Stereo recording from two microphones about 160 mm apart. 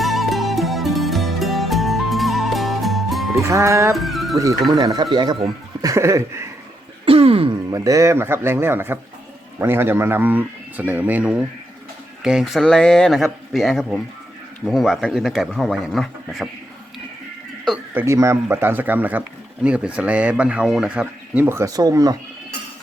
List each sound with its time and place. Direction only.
0.0 s music: centre (ahead or behind)
3.4 s speech: 20° right (ahead or behind)
3.9 s music: centre (ahead or behind)
4.7 s a sound: 25° right (ahead or behind)
7.0 s throat clearing: 35° right (ahead or behind)
7.7 s speech: 20° right (ahead or behind); by 16.5 s centre (ahead or behind)
17.9 s speech: 15° right (ahead or behind)